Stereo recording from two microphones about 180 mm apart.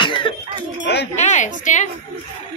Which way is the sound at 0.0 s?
25° left (ahead or behind).